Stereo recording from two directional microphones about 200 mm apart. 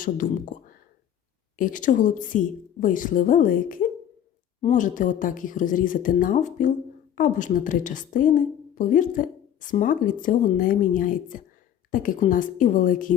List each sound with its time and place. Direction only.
0.0 s a woman's voice: 40° left (ahead or behind)
1.5 s a woman's voice: 40° left (ahead or behind)